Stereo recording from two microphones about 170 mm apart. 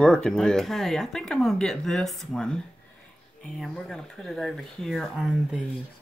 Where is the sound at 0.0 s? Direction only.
5° left (ahead or behind).